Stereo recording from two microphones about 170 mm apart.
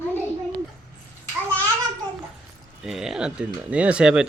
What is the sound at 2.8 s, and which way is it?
Speech, centre (ahead or behind).